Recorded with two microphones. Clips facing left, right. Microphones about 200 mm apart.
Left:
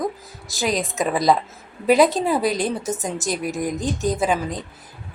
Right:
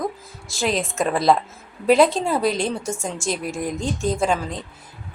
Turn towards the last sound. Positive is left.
turn(degrees=5)  # may be behind; listen again after turning